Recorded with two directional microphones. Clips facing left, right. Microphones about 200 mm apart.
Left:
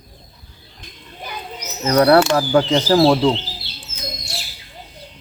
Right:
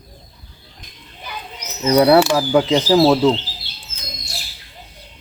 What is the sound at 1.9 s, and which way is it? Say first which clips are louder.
Speech: right 1 dB; 10° right (ahead or behind).